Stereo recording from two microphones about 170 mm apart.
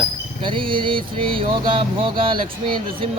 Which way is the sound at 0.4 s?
30° right (ahead or behind).